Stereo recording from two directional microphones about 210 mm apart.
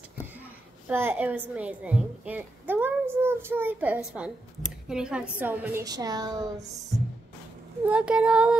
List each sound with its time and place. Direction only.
0.8 s a woman's voice: 10° right (ahead or behind)
7.8 s speech: 5° right (ahead or behind)